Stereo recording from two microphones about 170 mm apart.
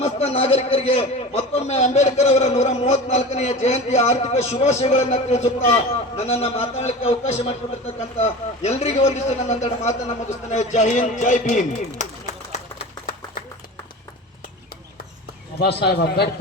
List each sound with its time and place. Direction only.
0.0 s a man's voice: 35° left (ahead or behind)
15.6 s a man's voice: 70° left (ahead or behind)